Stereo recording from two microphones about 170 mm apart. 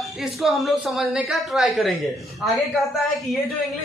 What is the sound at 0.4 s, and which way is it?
A woman's voice, centre (ahead or behind).